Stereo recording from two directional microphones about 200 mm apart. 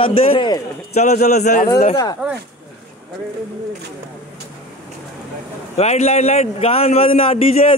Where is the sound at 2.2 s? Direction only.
5° right (ahead or behind).